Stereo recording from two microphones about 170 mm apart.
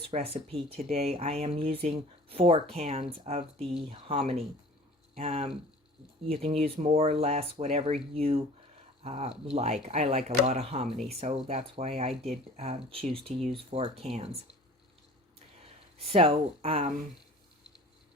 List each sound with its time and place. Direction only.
0.0 s speech: 35° right (ahead or behind)
16.0 s speech: 30° right (ahead or behind)